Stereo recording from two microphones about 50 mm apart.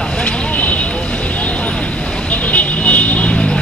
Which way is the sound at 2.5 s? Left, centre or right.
Left.